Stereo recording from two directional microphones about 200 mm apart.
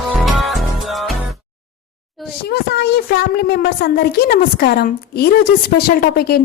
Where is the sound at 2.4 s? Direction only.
55° left (ahead or behind).